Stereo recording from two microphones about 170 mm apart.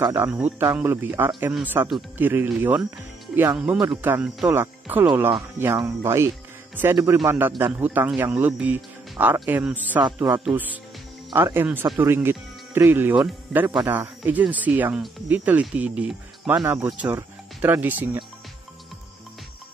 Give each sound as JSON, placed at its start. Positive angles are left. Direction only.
{"t": 0.0, "sound": "speech", "side_deg": -20}
{"t": 0.3, "sound": "speech", "side_deg": -10}